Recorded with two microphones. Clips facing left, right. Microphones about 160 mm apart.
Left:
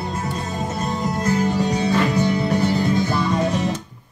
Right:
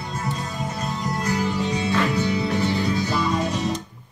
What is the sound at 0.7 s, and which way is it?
Music, 50° left (ahead or behind).